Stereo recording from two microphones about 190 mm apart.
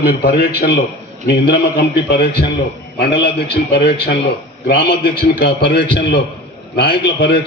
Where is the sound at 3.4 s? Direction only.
55° left (ahead or behind).